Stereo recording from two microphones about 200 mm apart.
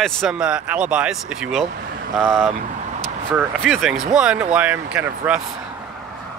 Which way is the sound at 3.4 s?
Centre (ahead or behind).